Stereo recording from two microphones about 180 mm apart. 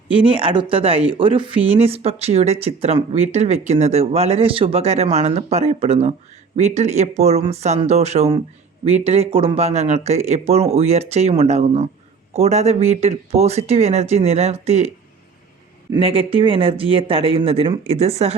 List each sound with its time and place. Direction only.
0.1 s speech: 30° right (ahead or behind)
15.9 s speech: 30° right (ahead or behind)